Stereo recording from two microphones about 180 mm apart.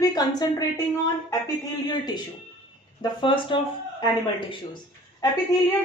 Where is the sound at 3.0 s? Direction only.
25° left (ahead or behind).